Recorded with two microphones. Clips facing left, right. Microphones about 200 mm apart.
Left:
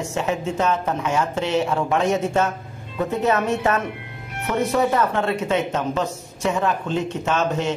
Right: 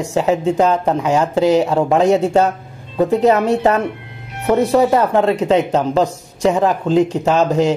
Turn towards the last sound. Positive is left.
turn(degrees=-35)  # may be behind; listen again after turning